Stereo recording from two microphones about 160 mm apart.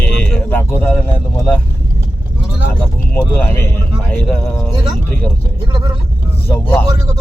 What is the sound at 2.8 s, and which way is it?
Speech, 10° left (ahead or behind).